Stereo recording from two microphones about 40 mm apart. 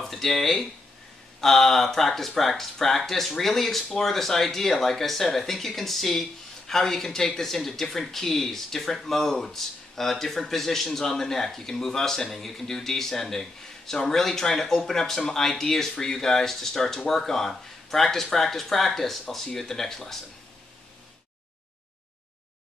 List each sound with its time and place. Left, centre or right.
0.0 s speech: centre